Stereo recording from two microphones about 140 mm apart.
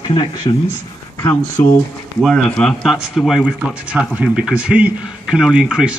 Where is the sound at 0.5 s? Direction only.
35° left (ahead or behind).